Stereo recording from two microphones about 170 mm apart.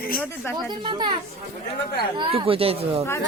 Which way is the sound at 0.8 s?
30° right (ahead or behind).